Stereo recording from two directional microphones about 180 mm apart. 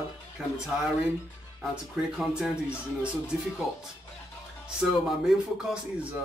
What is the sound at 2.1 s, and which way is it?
Speech, 5° right (ahead or behind).